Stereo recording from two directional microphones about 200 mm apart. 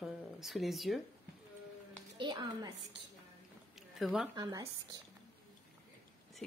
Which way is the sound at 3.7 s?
5° right (ahead or behind).